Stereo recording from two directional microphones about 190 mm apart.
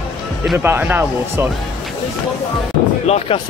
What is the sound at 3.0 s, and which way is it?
Speech, 35° left (ahead or behind).